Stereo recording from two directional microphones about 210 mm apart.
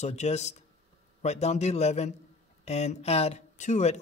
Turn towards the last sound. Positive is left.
turn(degrees=35)  # may be behind; listen again after turning